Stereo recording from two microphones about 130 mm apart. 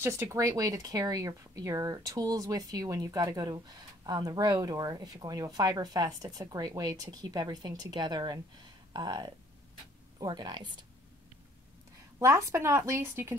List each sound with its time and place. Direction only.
0.0 s speech: 20° right (ahead or behind); by 10.9 s 35° right (ahead or behind)
12.2 s speech: 20° right (ahead or behind)